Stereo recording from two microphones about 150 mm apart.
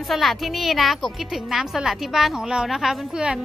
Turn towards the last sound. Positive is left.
turn(degrees=-5)  # may be behind; listen again after turning